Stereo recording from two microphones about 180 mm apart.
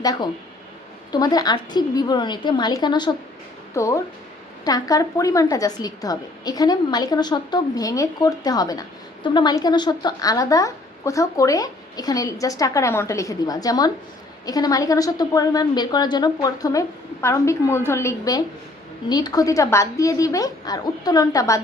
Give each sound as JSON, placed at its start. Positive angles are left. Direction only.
{"t": 0.0, "sound": "a woman's voice", "side_deg": 20}